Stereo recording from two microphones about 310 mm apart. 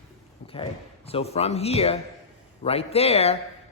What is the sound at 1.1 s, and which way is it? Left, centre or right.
A man's voice, centre.